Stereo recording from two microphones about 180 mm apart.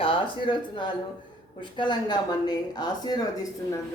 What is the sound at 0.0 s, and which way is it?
Speech, 30° left (ahead or behind).